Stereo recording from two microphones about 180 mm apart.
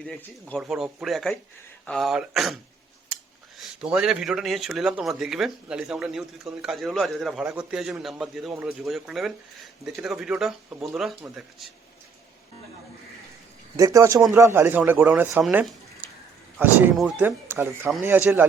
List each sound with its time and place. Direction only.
0.0 s speech: 5° left (ahead or behind)
3.6 s speech: centre (ahead or behind)
13.7 s speech: 20° right (ahead or behind)